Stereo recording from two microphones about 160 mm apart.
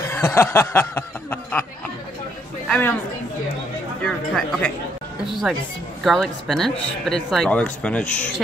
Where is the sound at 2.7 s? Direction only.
10° left (ahead or behind).